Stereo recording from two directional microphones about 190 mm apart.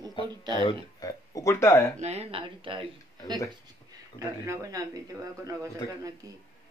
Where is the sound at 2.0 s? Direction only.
35° right (ahead or behind).